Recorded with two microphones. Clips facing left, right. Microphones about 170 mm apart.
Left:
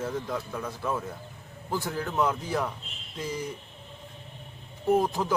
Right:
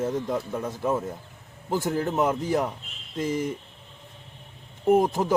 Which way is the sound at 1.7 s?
45° right (ahead or behind).